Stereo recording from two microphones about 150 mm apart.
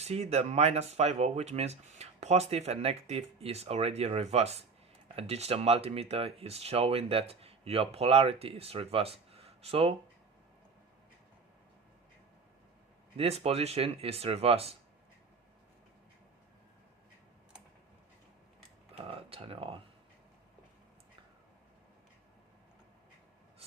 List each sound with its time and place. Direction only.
0.0 s speech: 45° right (ahead or behind)
13.1 s speech: 40° right (ahead or behind)
19.0 s speech: 40° right (ahead or behind)